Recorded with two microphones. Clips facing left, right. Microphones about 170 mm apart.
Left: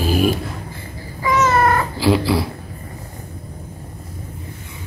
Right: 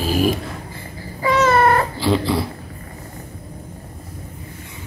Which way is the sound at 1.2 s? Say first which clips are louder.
Right 1 dB; 30° right (ahead or behind).